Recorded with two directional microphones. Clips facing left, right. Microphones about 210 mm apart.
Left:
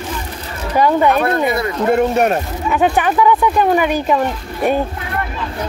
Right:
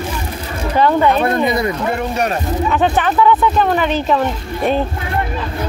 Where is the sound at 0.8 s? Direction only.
10° left (ahead or behind).